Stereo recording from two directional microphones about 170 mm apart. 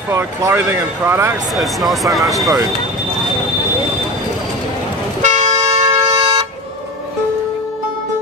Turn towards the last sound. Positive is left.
turn(degrees=-35)  # may be behind; listen again after turning